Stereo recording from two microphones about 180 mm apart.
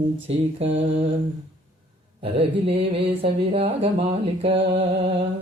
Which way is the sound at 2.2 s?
30° right (ahead or behind).